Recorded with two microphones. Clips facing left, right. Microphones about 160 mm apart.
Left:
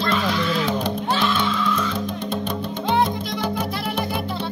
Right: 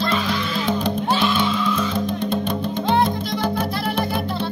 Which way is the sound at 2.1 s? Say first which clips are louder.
Right 3 dB; 10° left (ahead or behind).